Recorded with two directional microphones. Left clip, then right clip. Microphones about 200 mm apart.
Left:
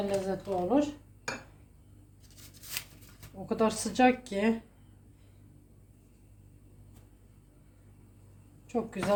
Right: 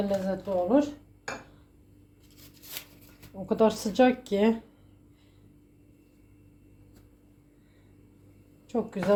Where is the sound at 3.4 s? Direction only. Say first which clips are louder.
Right 5 dB; 20° right (ahead or behind).